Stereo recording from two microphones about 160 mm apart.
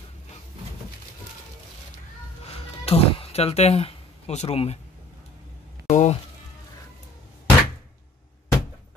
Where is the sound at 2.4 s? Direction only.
40° left (ahead or behind).